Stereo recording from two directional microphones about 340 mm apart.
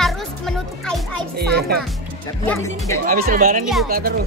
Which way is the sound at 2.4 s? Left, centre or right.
Centre.